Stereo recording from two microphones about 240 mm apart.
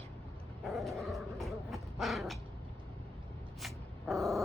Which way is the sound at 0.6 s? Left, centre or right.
Centre.